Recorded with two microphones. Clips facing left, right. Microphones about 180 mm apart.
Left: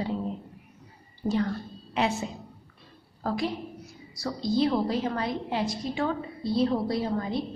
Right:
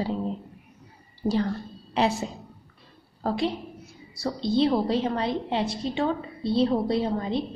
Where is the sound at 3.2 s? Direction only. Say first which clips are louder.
Right 3 dB; 25° right (ahead or behind).